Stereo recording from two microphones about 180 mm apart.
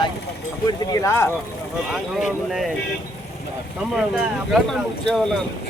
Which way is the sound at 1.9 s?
Centre (ahead or behind).